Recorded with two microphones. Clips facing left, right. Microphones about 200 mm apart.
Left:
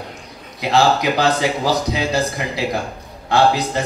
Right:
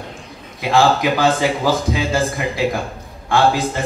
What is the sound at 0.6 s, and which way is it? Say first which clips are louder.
A man's voice: right 1 dB; 50° right (ahead or behind).